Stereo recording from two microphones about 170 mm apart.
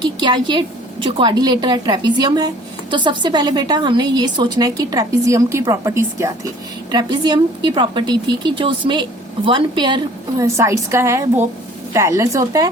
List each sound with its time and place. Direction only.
0.0 s a woman's voice: 25° right (ahead or behind)